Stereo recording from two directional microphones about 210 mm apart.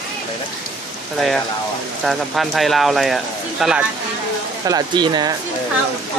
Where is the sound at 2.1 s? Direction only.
Centre (ahead or behind).